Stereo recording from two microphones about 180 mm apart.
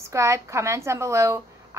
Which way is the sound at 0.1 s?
15° right (ahead or behind).